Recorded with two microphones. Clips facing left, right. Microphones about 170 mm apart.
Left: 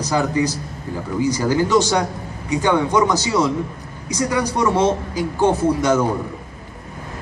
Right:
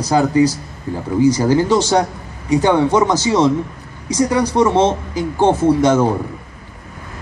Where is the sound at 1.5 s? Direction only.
30° right (ahead or behind).